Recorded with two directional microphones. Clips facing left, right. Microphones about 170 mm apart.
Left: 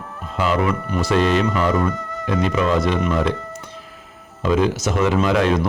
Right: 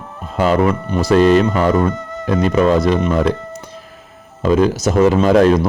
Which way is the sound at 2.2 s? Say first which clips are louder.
Right 6 dB; 40° right (ahead or behind).